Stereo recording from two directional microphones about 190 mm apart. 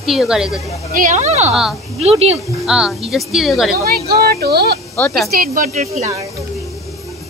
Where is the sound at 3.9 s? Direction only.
55° right (ahead or behind); by 6.1 s 35° right (ahead or behind).